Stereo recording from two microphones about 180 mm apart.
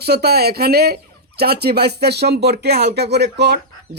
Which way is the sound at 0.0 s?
60° right (ahead or behind).